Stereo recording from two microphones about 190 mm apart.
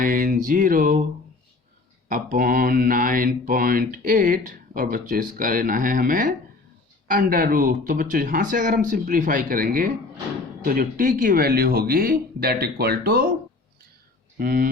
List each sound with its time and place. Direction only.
0.0 s a sound: 45° right (ahead or behind)
2.0 s mantra: 45° right (ahead or behind)
14.3 s mantra: 50° right (ahead or behind)